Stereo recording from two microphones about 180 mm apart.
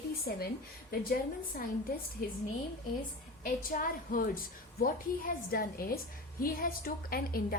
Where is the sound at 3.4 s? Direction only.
50° left (ahead or behind).